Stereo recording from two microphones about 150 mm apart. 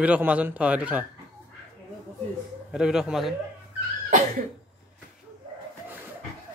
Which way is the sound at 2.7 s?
5° right (ahead or behind).